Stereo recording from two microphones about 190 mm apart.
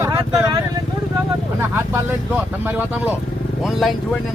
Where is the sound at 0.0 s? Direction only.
15° right (ahead or behind).